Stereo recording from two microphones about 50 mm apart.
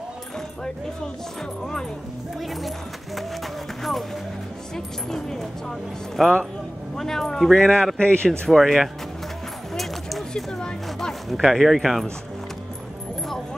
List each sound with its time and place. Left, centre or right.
4.7 s speech: centre
8.0 s speech: left
8.3 s speech: centre
9.8 s dog: centre
10.6 s speech: centre
11.3 s speech: centre